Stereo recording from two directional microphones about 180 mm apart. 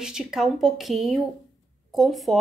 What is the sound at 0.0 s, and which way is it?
A woman's voice, 5° right (ahead or behind).